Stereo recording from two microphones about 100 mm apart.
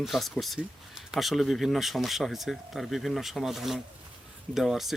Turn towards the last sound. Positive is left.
turn(degrees=-5)  # may be behind; listen again after turning